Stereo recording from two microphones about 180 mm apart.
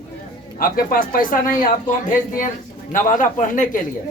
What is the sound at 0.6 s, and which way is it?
A man's voice, 55° left (ahead or behind).